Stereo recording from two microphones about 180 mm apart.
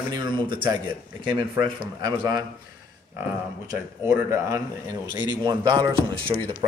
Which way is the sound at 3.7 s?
15° right (ahead or behind).